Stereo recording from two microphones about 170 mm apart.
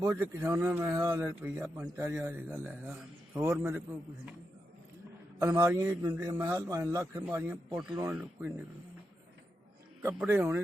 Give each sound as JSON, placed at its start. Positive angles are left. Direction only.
{"t": 0.0, "sound": "a man's voice", "side_deg": -15}
{"t": 5.4, "sound": "a man's voice", "side_deg": -20}
{"t": 10.0, "sound": "a man's voice", "side_deg": -15}